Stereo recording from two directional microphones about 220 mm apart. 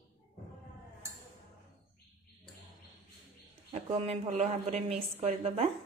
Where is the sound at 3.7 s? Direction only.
25° right (ahead or behind).